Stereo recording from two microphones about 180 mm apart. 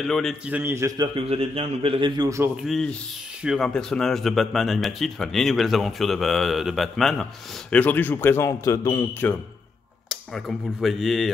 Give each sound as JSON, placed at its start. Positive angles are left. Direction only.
{"t": 0.0, "sound": "a man's voice", "side_deg": 0}
{"t": 2.5, "sound": "a man's voice", "side_deg": 0}
{"t": 10.0, "sound": "speech", "side_deg": 0}